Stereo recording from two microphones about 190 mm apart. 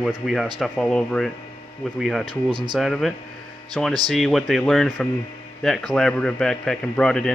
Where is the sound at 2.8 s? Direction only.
Centre (ahead or behind).